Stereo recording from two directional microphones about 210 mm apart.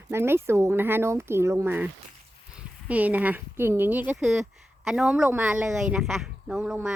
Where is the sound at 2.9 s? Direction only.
5° right (ahead or behind).